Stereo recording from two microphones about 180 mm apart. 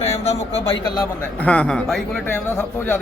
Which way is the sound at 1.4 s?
5° left (ahead or behind).